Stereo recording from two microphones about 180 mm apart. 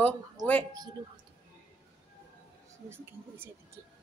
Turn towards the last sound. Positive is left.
turn(degrees=-15)  # may be behind; listen again after turning